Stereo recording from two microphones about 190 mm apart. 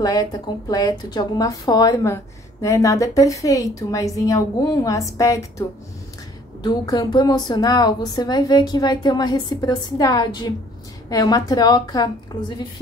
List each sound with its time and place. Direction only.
0.0 s a woman's voice: 20° left (ahead or behind)